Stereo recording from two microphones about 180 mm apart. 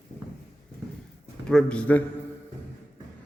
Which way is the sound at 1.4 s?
5° left (ahead or behind).